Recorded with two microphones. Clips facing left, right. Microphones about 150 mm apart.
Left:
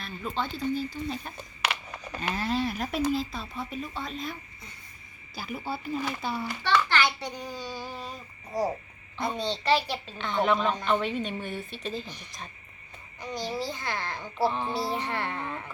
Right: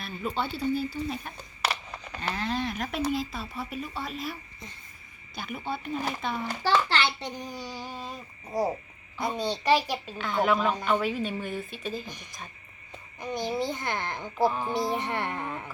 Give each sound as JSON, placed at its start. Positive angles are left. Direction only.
{"t": 0.0, "sound": "a woman's voice", "side_deg": -5}
{"t": 2.1, "sound": "a woman's voice", "side_deg": 10}
{"t": 6.5, "sound": "a child's voice", "side_deg": -40}
{"t": 9.1, "sound": "a woman's voice", "side_deg": -10}
{"t": 13.1, "sound": "a child's voice", "side_deg": -20}